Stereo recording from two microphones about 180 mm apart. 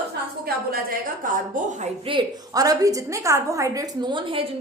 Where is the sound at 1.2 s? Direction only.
50° right (ahead or behind).